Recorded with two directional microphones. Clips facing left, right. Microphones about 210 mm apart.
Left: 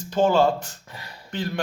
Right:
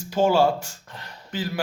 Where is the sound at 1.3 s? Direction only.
5° right (ahead or behind).